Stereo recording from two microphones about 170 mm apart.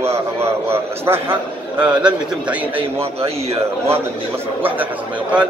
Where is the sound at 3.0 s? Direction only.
35° right (ahead or behind).